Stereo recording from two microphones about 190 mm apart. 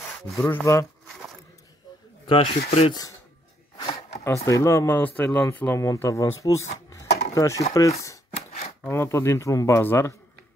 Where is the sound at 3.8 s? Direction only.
25° left (ahead or behind).